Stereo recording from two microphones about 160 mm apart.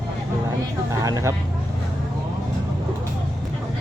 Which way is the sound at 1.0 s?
20° right (ahead or behind).